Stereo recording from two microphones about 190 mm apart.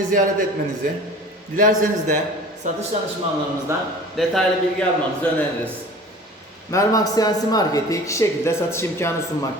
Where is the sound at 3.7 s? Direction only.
15° right (ahead or behind).